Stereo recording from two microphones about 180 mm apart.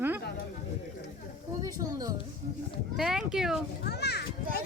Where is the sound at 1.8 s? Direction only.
20° right (ahead or behind).